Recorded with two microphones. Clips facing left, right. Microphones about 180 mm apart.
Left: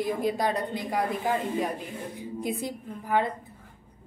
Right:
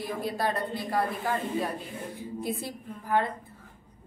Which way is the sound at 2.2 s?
15° left (ahead or behind).